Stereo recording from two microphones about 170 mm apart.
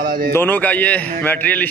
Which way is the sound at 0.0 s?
60° right (ahead or behind).